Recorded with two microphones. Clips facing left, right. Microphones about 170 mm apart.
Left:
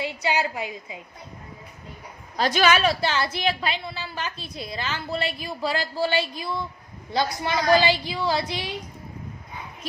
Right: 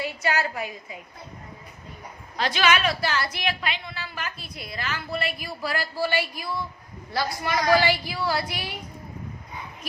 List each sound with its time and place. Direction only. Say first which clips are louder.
0.0 s a woman's voice: left 1 dB; 20° left (ahead or behind)
2.4 s a woman's voice: left 3 dB; 40° left (ahead or behind); by 8.7 s 20° left (ahead or behind)